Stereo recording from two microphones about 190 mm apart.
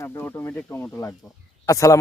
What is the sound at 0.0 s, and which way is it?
Speech, 10° left (ahead or behind).